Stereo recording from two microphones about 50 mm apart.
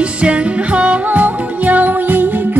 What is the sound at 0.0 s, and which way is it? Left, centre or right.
Music, right.